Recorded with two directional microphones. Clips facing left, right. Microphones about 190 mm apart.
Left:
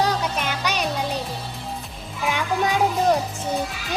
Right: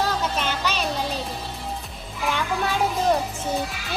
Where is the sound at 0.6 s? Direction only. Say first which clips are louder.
Left 1 dB; 15° left (ahead or behind).